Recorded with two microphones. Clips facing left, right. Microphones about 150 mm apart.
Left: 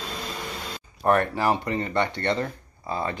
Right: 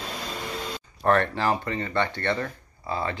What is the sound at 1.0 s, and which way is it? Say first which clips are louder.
Speech: left 1 dB; 15° left (ahead or behind).